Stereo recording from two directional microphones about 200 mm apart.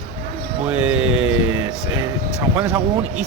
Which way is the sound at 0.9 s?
90° right.